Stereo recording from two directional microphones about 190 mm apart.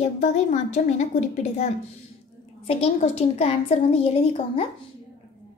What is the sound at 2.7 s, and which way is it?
A woman's voice, 30° left (ahead or behind).